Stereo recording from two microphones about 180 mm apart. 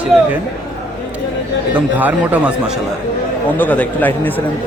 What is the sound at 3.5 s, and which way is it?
Speech, 10° left (ahead or behind).